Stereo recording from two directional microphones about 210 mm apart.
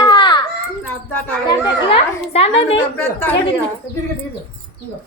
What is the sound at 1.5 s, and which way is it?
A child's voice, 20° left (ahead or behind).